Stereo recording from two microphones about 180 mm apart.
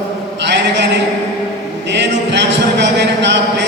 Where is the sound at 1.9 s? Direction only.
75° right (ahead or behind).